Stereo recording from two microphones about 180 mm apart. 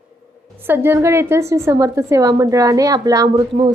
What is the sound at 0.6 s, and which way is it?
A woman's voice, 10° right (ahead or behind).